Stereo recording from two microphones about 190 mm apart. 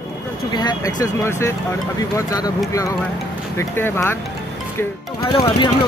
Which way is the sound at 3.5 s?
10° left (ahead or behind).